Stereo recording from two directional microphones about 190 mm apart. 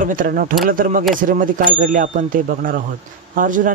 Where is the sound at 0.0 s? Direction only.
45° right (ahead or behind).